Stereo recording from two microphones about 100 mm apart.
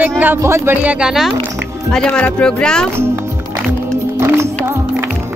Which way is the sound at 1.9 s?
10° left (ahead or behind).